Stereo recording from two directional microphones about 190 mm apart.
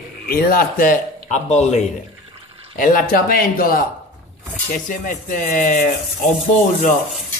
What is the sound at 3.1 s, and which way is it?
Rub, 50° left (ahead or behind).